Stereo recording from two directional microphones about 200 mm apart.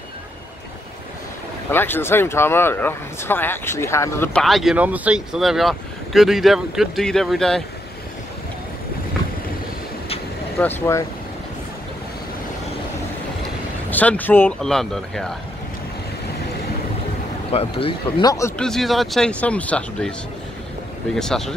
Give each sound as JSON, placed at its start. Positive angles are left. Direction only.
{"t": 1.7, "sound": "speech", "side_deg": 10}
{"t": 10.6, "sound": "speech", "side_deg": 10}
{"t": 13.8, "sound": "speech", "side_deg": 10}
{"t": 17.5, "sound": "speech", "side_deg": 30}
{"t": 18.6, "sound": "speech", "side_deg": 0}